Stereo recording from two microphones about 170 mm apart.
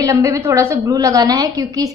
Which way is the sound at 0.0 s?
20° right (ahead or behind).